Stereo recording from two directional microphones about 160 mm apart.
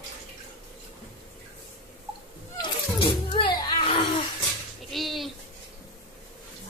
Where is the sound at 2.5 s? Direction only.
30° left (ahead or behind).